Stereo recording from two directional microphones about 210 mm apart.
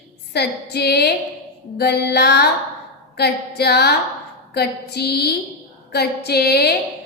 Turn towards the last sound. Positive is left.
turn(degrees=50)  # may be behind; listen again after turning